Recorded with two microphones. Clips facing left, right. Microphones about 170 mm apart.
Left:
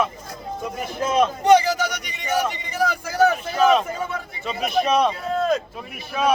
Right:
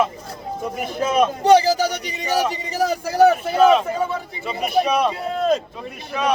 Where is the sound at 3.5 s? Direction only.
Centre (ahead or behind).